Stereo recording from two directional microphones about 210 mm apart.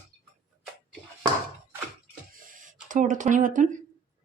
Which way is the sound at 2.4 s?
40° right (ahead or behind).